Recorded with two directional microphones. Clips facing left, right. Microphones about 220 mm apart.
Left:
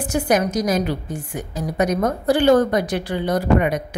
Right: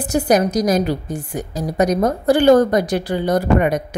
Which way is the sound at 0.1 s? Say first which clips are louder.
Right 4 dB; 35° right (ahead or behind).